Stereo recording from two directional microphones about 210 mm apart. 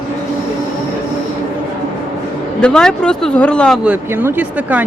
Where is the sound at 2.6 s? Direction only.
5° left (ahead or behind).